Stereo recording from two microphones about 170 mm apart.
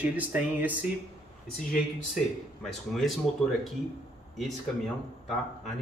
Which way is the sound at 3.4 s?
5° left (ahead or behind).